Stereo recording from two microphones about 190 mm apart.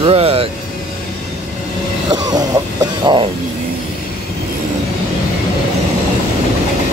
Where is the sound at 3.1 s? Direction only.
20° right (ahead or behind).